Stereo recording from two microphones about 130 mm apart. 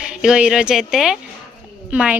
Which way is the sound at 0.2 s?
5° right (ahead or behind).